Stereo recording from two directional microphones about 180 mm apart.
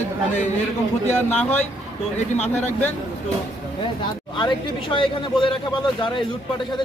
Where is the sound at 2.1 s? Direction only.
40° left (ahead or behind).